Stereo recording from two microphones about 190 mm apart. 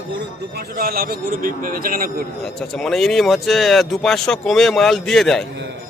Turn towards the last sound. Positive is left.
turn(degrees=0)  # may be behind; listen again after turning